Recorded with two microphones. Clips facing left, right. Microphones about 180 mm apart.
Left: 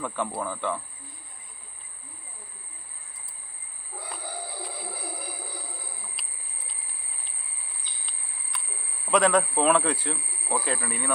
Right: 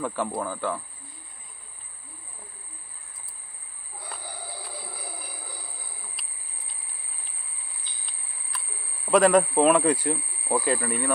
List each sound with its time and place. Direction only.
0.0 s speech: 10° right (ahead or behind)
8.0 s cricket: centre (ahead or behind)
9.0 s speech: 10° right (ahead or behind)